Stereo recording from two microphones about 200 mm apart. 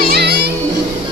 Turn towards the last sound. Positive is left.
turn(degrees=-55)  # may be behind; listen again after turning